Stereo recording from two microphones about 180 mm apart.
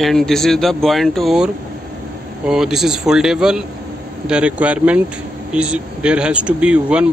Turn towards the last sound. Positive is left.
turn(degrees=-5)  # may be behind; listen again after turning